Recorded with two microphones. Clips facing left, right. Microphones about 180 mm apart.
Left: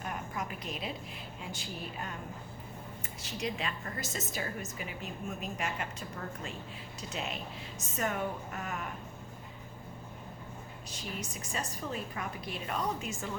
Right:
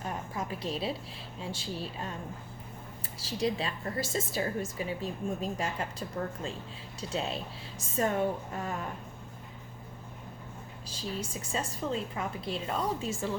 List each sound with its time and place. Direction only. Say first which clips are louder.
0.0 s a sound: right 2 dB; 30° right (ahead or behind)
1.4 s a woman's voice: right 6 dB; 30° right (ahead or behind)
3.2 s a woman's voice: right 6 dB; 30° right (ahead or behind)
10.8 s a woman's voice: right 5 dB; 30° right (ahead or behind)